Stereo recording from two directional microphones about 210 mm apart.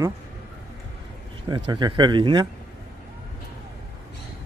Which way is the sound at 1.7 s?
20° right (ahead or behind).